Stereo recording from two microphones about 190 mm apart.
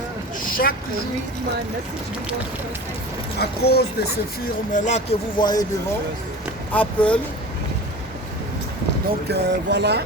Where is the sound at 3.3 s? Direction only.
55° left (ahead or behind).